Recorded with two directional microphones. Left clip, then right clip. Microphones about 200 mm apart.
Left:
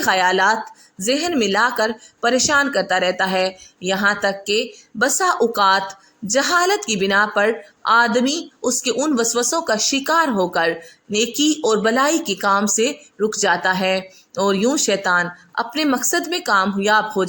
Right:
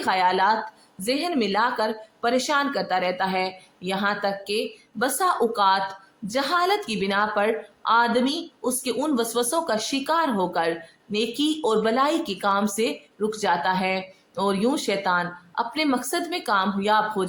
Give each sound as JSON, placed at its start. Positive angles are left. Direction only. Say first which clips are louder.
{"t": 0.0, "sound": "speech", "louder": "left 5 dB", "side_deg": 30}